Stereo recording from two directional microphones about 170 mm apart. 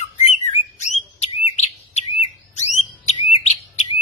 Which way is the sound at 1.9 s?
40° left (ahead or behind).